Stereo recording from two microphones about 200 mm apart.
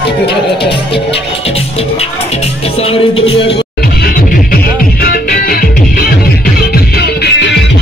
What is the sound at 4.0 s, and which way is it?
Music, 45° left (ahead or behind).